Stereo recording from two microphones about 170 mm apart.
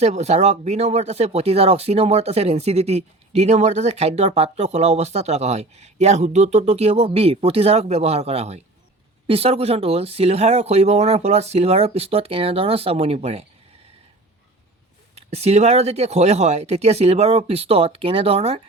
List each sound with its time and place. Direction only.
0.0 s speech: 40° right (ahead or behind)
15.1 s speech: 40° right (ahead or behind)